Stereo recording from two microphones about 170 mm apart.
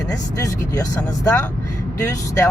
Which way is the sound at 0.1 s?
20° left (ahead or behind).